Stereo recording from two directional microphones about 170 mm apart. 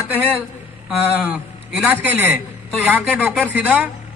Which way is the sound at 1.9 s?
10° right (ahead or behind).